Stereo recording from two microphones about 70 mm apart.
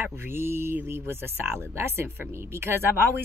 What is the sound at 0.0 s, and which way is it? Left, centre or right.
Speech, right.